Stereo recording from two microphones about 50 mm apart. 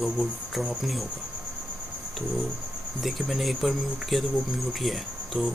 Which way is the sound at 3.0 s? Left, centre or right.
Centre.